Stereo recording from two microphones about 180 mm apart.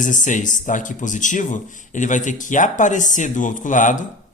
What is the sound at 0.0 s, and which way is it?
Speech, 45° left (ahead or behind).